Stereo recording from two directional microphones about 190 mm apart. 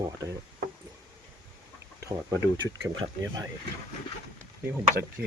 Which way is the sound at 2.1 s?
20° right (ahead or behind).